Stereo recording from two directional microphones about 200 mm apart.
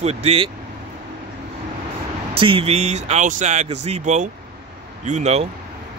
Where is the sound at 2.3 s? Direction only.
25° right (ahead or behind).